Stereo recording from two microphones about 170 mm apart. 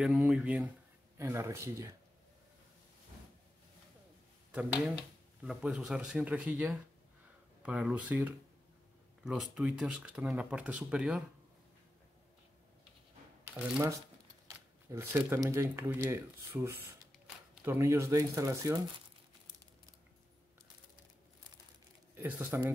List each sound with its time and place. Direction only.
0.0 s speech: centre (ahead or behind); by 2.0 s 20° right (ahead or behind)
4.5 s speech: 5° right (ahead or behind)
13.5 s speech: 10° right (ahead or behind)
22.1 s speech: 15° right (ahead or behind)